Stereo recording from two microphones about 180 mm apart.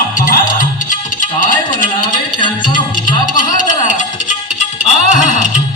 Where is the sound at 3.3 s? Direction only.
45° left (ahead or behind).